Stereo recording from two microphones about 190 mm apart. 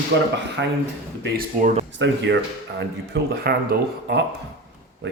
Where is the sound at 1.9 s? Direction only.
70° right (ahead or behind).